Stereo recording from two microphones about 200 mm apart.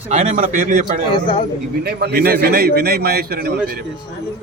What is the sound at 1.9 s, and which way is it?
A man's voice, 55° right (ahead or behind).